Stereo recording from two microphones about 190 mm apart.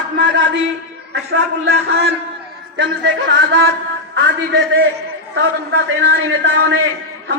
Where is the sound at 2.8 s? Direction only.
70° right (ahead or behind).